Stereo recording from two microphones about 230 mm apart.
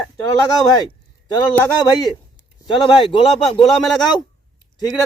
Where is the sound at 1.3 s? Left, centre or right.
Centre.